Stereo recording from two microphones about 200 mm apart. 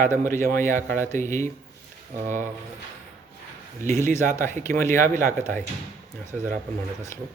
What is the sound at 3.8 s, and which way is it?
Speech, 15° left (ahead or behind).